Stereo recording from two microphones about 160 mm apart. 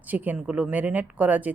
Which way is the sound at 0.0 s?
10° right (ahead or behind).